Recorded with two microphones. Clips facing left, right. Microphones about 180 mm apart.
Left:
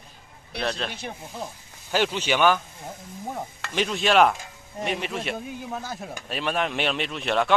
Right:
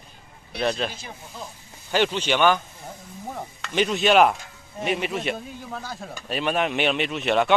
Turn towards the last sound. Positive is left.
turn(degrees=0)  # may be behind; listen again after turning